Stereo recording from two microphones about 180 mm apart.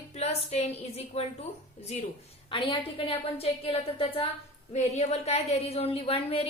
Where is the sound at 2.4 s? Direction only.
30° left (ahead or behind).